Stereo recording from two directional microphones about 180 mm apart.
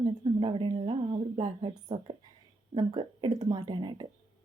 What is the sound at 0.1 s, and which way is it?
A woman's voice, 30° right (ahead or behind).